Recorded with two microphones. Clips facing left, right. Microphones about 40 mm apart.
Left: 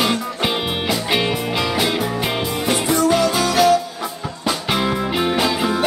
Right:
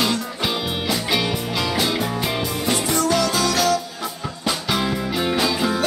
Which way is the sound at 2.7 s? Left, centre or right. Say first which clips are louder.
Left 4 dB; left.